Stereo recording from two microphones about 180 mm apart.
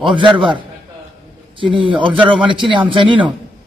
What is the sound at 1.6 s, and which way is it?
A man's voice, 25° right (ahead or behind).